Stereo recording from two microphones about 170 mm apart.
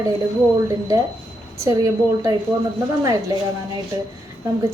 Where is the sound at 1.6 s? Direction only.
20° right (ahead or behind).